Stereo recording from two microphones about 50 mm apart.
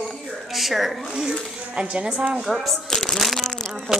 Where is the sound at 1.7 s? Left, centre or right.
Centre.